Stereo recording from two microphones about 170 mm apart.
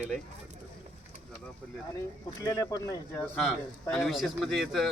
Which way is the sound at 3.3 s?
Centre (ahead or behind).